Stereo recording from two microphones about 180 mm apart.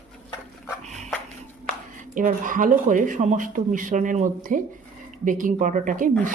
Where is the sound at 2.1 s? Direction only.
50° right (ahead or behind).